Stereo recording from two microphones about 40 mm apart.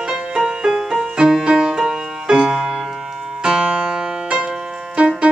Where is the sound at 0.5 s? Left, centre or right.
Centre.